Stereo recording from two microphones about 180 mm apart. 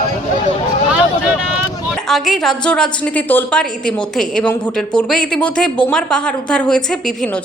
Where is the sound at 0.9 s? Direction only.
5° right (ahead or behind).